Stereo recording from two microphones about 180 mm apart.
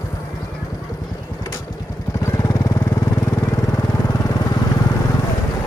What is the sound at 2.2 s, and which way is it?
Vehicle, 15° left (ahead or behind).